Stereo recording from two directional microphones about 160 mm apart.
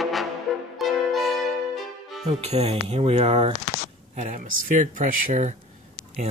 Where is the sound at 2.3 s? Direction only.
40° right (ahead or behind).